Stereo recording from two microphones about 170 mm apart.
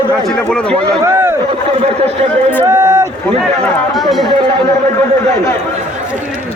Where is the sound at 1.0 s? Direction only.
15° right (ahead or behind).